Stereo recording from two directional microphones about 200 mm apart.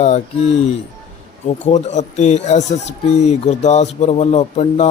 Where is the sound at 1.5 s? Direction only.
35° left (ahead or behind).